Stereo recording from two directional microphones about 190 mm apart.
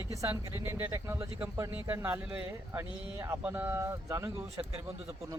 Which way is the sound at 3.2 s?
10° right (ahead or behind).